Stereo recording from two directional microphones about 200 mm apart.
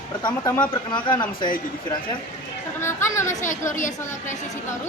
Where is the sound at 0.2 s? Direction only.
20° left (ahead or behind).